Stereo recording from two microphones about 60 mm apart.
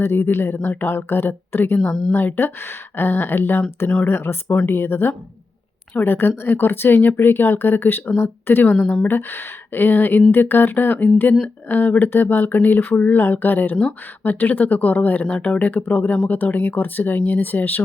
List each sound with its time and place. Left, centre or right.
0.0 s speech: left